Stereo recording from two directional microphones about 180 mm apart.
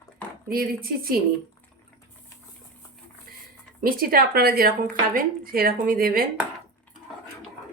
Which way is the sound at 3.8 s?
50° right (ahead or behind).